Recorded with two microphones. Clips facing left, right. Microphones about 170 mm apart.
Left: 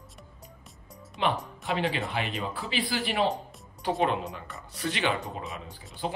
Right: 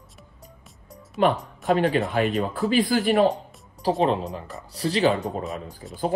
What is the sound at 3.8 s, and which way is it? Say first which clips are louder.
Speech: right 5 dB; 35° right (ahead or behind).